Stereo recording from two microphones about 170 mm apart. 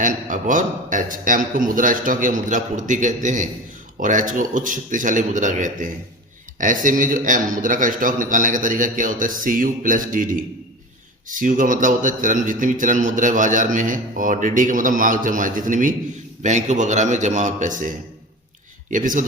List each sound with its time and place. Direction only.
0.0 s a man's voice: 50° right (ahead or behind)